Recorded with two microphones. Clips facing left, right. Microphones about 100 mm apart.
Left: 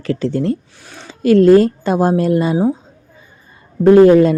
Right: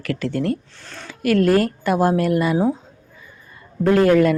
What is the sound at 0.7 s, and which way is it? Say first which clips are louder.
Speech: left 1 dB; 10° left (ahead or behind).